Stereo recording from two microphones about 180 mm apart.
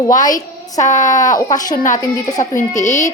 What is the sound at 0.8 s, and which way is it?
Speech, 40° left (ahead or behind).